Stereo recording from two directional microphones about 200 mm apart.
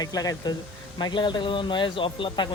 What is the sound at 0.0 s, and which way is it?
Speech, 20° left (ahead or behind).